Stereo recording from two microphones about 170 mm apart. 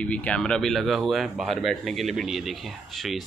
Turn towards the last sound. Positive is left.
turn(degrees=0)  # may be behind; listen again after turning